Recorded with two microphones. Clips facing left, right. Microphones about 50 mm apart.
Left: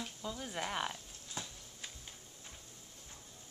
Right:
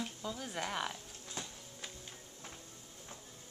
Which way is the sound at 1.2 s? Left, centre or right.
Centre.